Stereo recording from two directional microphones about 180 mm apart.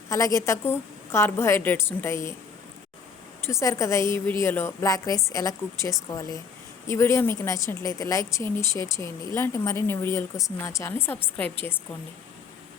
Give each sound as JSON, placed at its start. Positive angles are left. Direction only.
{"t": 0.1, "sound": "a woman's voice", "side_deg": 15}
{"t": 3.4, "sound": "a woman's voice", "side_deg": 15}